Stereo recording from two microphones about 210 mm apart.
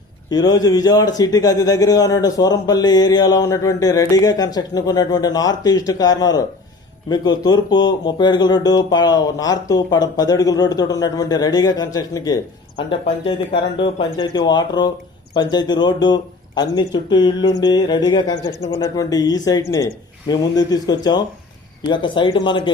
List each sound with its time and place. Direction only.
0.3 s a man's voice: 20° left (ahead or behind)